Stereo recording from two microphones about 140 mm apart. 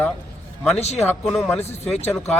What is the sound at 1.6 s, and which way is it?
Speech, 50° left (ahead or behind).